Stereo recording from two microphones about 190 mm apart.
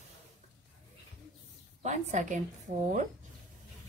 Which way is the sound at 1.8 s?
40° right (ahead or behind).